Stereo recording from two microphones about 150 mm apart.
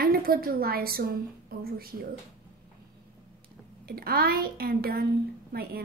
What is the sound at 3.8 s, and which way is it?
A woman's voice, 90° right.